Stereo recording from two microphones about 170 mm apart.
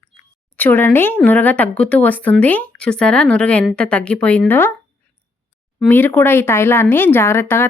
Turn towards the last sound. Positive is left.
turn(degrees=15)  # may be behind; listen again after turning